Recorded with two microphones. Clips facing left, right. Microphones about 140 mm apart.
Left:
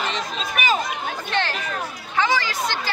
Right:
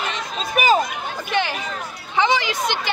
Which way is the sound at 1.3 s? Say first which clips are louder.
Right 3 dB; 10° right (ahead or behind).